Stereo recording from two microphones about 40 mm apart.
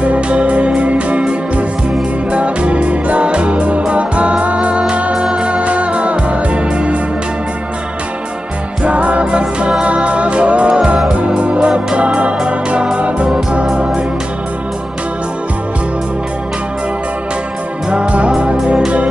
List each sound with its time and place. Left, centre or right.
0.0 s music: right
2.3 s music: right
5.1 s music: centre
5.5 s music: right
8.8 s music: right; by 9.8 s centre
9.8 s music: right
11.2 s organ: right
12.9 s music: right